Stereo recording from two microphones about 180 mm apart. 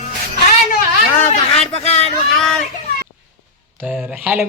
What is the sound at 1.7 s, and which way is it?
Speech, 35° left (ahead or behind).